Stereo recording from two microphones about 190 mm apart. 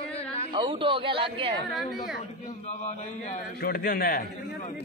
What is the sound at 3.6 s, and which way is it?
A man's voice, 50° left (ahead or behind).